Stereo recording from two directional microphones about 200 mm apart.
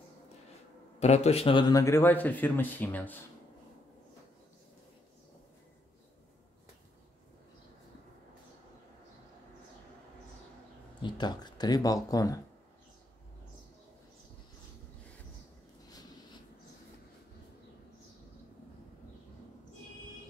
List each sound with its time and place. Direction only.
0.9 s a man's voice: 35° left (ahead or behind); by 3.2 s 10° left (ahead or behind)
11.0 s speech: 20° left (ahead or behind)